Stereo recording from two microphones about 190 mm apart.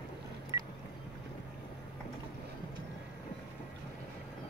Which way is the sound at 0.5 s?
20° right (ahead or behind).